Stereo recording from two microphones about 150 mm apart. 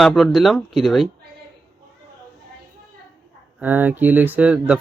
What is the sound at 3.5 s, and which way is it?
Speech, 10° right (ahead or behind).